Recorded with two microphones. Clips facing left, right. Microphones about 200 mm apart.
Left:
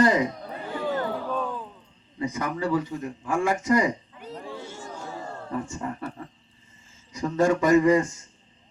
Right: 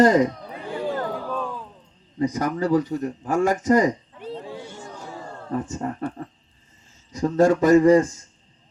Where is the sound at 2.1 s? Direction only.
40° right (ahead or behind).